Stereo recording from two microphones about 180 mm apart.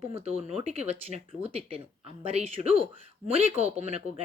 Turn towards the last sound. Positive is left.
turn(degrees=-35)  # may be behind; listen again after turning